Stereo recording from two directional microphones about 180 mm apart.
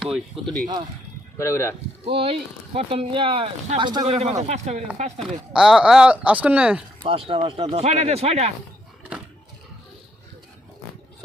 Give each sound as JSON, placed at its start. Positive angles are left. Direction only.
{"t": 0.4, "sound": "speech", "side_deg": 0}
{"t": 1.4, "sound": "speech", "side_deg": 15}
{"t": 2.0, "sound": "speech", "side_deg": -30}
{"t": 5.5, "sound": "speech", "side_deg": -5}
{"t": 7.0, "sound": "speech", "side_deg": -30}